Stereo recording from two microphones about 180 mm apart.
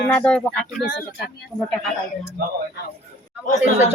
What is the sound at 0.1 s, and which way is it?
Speech, 5° left (ahead or behind).